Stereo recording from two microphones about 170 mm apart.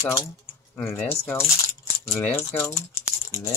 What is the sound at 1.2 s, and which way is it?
Speech, 15° left (ahead or behind).